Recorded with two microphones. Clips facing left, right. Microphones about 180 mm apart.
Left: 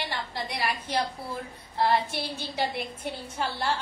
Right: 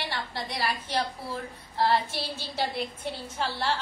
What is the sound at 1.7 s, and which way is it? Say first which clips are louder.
Speech: even; 15° left (ahead or behind).